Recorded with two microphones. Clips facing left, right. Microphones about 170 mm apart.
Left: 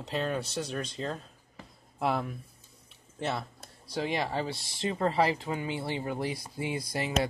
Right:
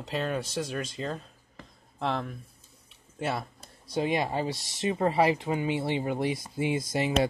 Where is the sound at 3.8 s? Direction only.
20° right (ahead or behind).